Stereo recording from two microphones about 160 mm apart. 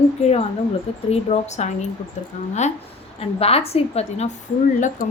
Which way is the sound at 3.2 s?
40° left (ahead or behind).